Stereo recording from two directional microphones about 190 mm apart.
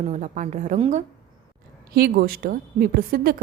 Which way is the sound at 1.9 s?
50° right (ahead or behind).